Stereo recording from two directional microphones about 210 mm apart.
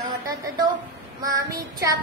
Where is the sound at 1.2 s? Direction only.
15° right (ahead or behind).